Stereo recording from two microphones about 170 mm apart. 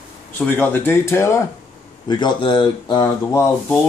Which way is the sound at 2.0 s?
25° left (ahead or behind).